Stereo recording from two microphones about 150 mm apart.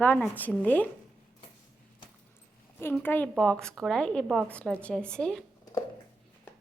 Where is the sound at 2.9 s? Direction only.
10° left (ahead or behind); by 4.5 s 5° right (ahead or behind).